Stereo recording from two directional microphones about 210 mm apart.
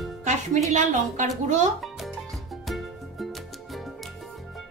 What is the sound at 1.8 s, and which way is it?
Music, centre (ahead or behind).